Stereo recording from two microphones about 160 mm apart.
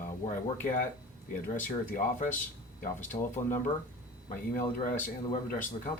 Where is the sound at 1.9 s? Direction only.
55° left (ahead or behind).